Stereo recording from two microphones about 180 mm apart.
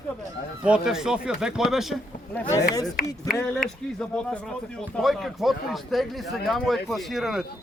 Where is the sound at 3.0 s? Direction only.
55° left (ahead or behind).